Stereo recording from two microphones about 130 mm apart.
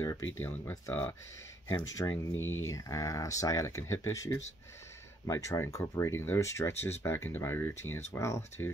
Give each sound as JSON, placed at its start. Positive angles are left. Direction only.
{"t": 0.0, "sound": "speech", "side_deg": 25}
{"t": 2.0, "sound": "speech", "side_deg": 25}